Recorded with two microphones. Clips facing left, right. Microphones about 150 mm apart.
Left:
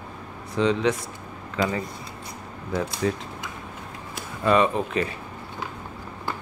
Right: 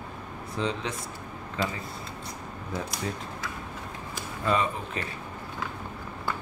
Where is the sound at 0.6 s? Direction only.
85° left.